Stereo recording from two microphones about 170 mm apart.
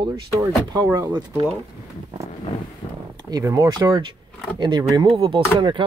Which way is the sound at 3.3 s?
20° right (ahead or behind).